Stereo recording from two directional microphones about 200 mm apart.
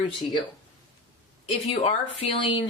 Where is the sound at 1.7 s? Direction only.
30° left (ahead or behind).